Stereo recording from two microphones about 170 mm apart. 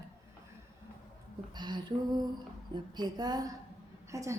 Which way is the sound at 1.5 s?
25° right (ahead or behind).